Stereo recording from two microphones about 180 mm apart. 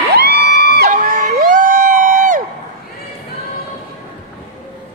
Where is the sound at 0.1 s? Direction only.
60° right (ahead or behind).